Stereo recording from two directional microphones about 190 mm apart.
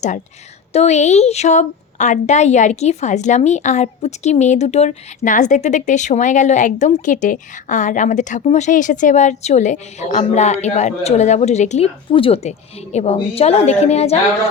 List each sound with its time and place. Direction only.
0.7 s a woman's voice: 35° left (ahead or behind)